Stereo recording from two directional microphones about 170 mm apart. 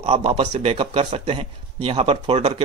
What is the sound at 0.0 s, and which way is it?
Speech, 35° right (ahead or behind).